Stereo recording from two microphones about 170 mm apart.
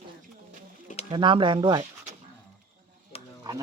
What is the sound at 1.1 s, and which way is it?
Speech, 30° right (ahead or behind).